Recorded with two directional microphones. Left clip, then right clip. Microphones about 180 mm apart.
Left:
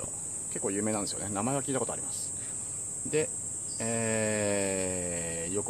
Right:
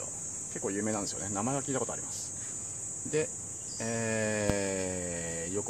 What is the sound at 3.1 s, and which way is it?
Speech, centre (ahead or behind).